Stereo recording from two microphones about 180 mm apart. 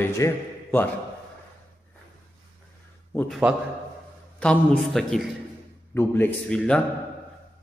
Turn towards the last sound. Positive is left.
turn(degrees=5)  # may be behind; listen again after turning